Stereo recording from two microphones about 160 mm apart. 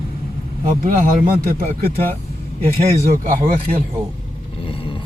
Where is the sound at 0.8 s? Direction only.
65° right (ahead or behind).